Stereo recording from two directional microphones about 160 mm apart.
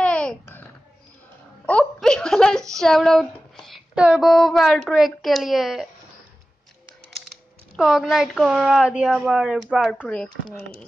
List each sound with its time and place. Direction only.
0.0 s babbling: 5° left (ahead or behind)
1.7 s a sound: 5° left (ahead or behind)
2.7 s speech: 5° left (ahead or behind)
7.7 s speech: centre (ahead or behind)